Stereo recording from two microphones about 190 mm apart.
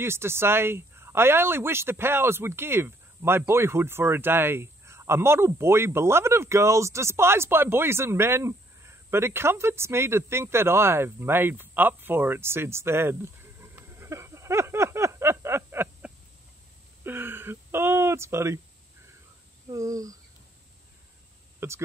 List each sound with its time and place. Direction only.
0.0 s speech: 15° right (ahead or behind)
19.7 s speech: 20° right (ahead or behind)
21.5 s speech: 15° right (ahead or behind)